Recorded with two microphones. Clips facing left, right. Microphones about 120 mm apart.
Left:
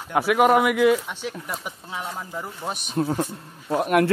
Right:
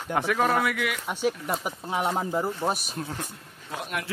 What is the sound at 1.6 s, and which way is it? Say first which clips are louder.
Speech: right 5 dB; 50° right (ahead or behind).